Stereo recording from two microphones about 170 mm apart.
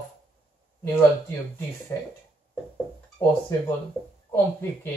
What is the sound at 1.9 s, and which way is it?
Speech, 15° left (ahead or behind).